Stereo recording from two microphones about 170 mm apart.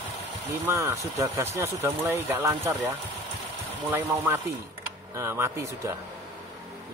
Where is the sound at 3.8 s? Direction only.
10° right (ahead or behind).